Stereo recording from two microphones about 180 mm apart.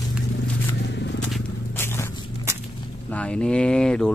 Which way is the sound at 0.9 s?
75° left (ahead or behind).